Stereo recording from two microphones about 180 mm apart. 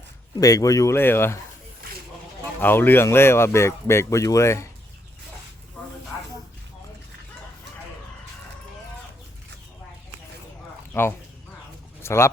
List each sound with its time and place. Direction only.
0.3 s speech: 20° left (ahead or behind)
2.6 s speech: 10° left (ahead or behind)
12.0 s speech: 15° left (ahead or behind)